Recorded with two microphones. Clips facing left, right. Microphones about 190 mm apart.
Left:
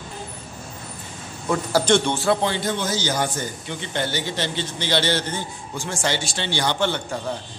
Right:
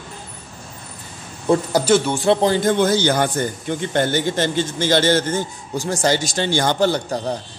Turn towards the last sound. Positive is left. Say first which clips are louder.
# right 5 dB
turn(degrees=-40)  # may be behind; listen again after turning